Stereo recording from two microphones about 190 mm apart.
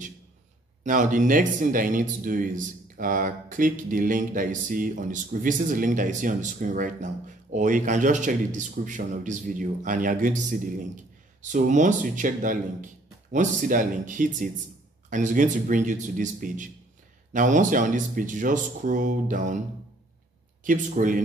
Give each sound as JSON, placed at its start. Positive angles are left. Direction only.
{"t": 0.8, "sound": "a man's voice", "side_deg": -45}
{"t": 20.6, "sound": "speech", "side_deg": -45}